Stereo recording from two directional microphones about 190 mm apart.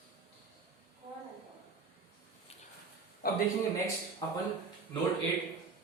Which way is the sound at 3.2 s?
50° left (ahead or behind).